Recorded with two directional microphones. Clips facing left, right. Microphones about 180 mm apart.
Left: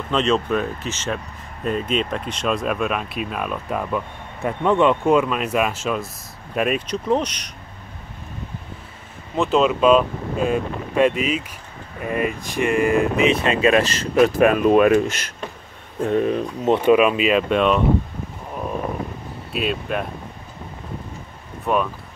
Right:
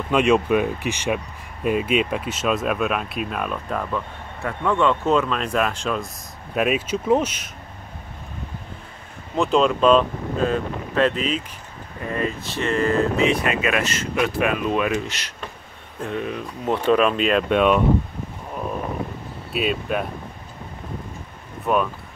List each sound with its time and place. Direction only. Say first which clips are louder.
0.1 s speech: right 2 dB; 10° right (ahead or behind)
9.4 s speech: left 1 dB; 5° left (ahead or behind); by 15.3 s 50° left (ahead or behind)
16.1 s speech: left 8 dB; 35° left (ahead or behind)
16.6 s speech: left 4 dB; 20° left (ahead or behind)
16.9 s speech: left 1 dB; 10° left (ahead or behind)
19.5 s speech: right 1 dB; centre (ahead or behind)
21.7 s speech: even; centre (ahead or behind)